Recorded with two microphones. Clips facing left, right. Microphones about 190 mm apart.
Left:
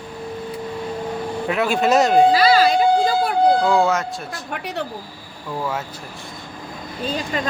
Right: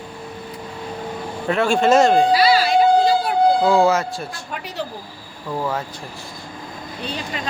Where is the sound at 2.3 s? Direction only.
45° left (ahead or behind).